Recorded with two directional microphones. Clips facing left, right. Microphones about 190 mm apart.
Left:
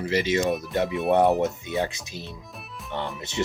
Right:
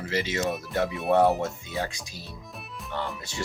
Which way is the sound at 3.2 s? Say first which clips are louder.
Left 7 dB; 20° left (ahead or behind).